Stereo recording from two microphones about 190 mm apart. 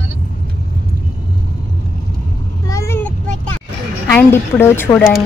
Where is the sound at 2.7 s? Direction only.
15° left (ahead or behind).